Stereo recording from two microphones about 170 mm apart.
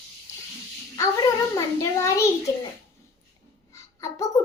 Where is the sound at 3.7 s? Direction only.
20° left (ahead or behind).